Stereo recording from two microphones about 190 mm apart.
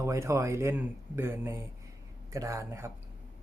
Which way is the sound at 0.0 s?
15° right (ahead or behind).